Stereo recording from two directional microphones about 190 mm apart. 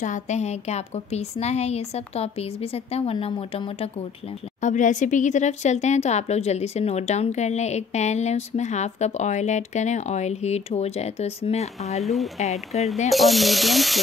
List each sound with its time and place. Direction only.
0.0 s speech: 40° left (ahead or behind)
4.6 s speech: 40° left (ahead or behind)
12.0 s speech: centre (ahead or behind)
12.7 s speech: 35° left (ahead or behind)
13.1 s speech: centre (ahead or behind)